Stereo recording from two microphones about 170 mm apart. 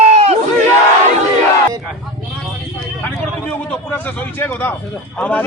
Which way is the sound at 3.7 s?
10° left (ahead or behind).